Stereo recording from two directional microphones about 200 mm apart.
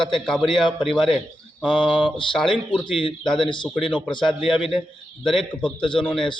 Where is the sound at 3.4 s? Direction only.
25° left (ahead or behind).